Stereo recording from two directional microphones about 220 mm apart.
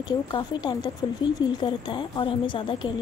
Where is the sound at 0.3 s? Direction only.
20° left (ahead or behind).